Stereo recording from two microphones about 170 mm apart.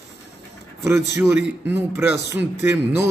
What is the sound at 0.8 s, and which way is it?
A man's voice, 15° right (ahead or behind).